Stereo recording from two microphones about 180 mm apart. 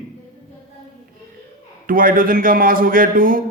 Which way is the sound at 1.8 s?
50° right (ahead or behind).